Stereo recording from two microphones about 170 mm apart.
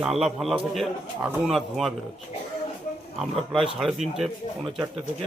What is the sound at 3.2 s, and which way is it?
Speech, centre (ahead or behind).